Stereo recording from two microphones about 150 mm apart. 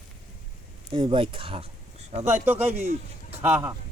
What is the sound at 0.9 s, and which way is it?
Speech, 35° right (ahead or behind).